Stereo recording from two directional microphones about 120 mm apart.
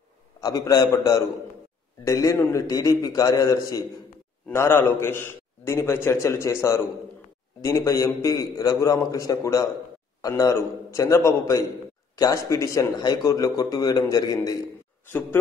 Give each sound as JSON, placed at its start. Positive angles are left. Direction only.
{"t": 0.4, "sound": "a man's voice", "side_deg": 30}